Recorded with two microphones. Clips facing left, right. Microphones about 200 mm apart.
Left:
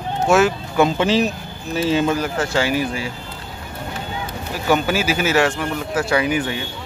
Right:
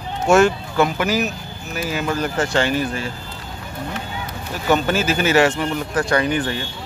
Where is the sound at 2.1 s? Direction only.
5° left (ahead or behind).